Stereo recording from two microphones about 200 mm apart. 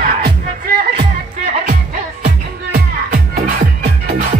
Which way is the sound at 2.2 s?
45° right (ahead or behind).